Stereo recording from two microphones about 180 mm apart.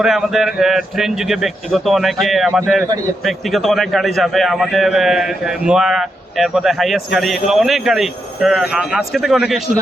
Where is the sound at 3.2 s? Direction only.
Centre (ahead or behind).